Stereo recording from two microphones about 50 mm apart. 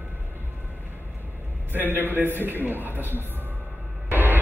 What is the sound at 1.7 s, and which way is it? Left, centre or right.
A man's voice, right.